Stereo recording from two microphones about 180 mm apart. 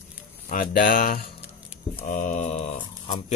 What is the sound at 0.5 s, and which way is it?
Mantra, 50° left (ahead or behind).